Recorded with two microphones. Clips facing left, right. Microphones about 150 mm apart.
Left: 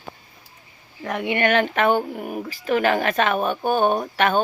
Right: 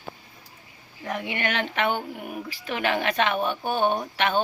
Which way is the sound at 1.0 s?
65° left (ahead or behind).